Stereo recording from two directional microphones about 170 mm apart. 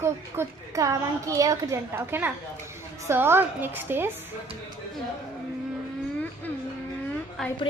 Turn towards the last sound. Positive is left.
turn(degrees=0)  # may be behind; listen again after turning